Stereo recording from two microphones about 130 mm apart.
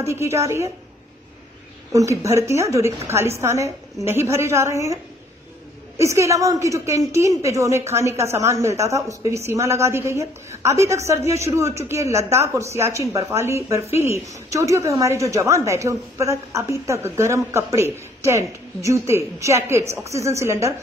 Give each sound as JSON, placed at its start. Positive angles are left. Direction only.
{"t": 0.0, "sound": "a woman's voice", "side_deg": -20}
{"t": 1.9, "sound": "a woman's voice", "side_deg": -25}
{"t": 5.9, "sound": "a woman's voice", "side_deg": -25}